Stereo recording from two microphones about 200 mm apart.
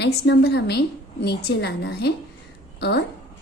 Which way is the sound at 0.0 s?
55° left (ahead or behind).